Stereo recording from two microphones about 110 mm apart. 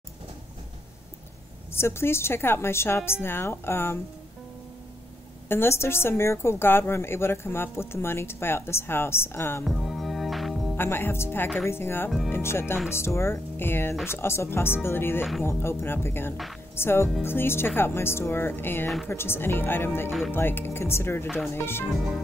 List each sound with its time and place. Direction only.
1.7 s a woman's voice: 25° left (ahead or behind)
5.5 s a woman's voice: 20° left (ahead or behind)
9.7 s music: centre (ahead or behind)
10.8 s a woman's voice: 20° left (ahead or behind)
20.1 s music: 5° right (ahead or behind)
20.3 s a woman's voice: 20° left (ahead or behind)
21.8 s music: 5° right (ahead or behind)